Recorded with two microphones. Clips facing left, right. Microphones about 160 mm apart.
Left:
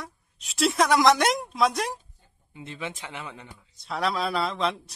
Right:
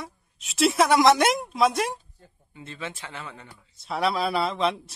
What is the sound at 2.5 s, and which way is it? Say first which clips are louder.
Speech: left 1 dB; 15° left (ahead or behind).